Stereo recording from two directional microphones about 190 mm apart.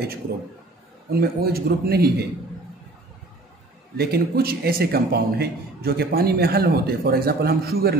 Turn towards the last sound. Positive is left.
turn(degrees=-55)  # may be behind; listen again after turning